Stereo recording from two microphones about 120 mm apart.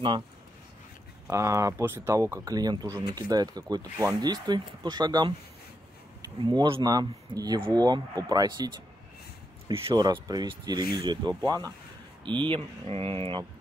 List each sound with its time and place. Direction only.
1.2 s speech: 25° right (ahead or behind)
6.4 s speech: 40° right (ahead or behind)
9.9 s speech: 35° right (ahead or behind); by 13.4 s 50° right (ahead or behind)